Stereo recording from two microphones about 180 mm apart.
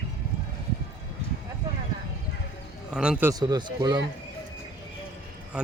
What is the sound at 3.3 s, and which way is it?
Speech, 20° right (ahead or behind).